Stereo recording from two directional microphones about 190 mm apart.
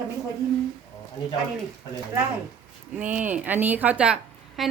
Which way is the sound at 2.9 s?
5° right (ahead or behind).